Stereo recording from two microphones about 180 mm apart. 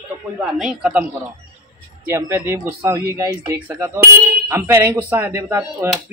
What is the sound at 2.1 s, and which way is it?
Speech, 10° right (ahead or behind).